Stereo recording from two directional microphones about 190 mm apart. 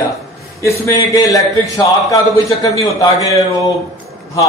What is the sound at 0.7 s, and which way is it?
A man's voice, 15° left (ahead or behind).